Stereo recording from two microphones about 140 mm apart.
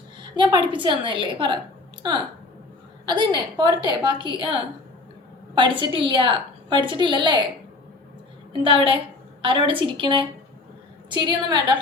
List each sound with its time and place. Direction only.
0.2 s a woman's voice: 35° right (ahead or behind)
3.1 s a woman's voice: 30° right (ahead or behind)
8.6 s a woman's voice: 40° right (ahead or behind)